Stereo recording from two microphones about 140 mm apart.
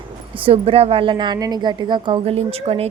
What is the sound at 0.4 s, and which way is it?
A woman's voice, 40° right (ahead or behind).